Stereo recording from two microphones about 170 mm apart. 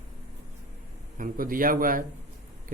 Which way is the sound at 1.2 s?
55° right (ahead or behind).